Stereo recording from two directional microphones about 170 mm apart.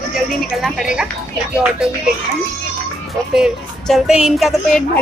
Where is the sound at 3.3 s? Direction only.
Centre (ahead or behind).